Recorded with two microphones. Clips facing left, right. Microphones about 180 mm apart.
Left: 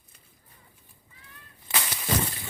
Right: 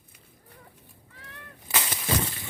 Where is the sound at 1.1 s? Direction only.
75° right (ahead or behind).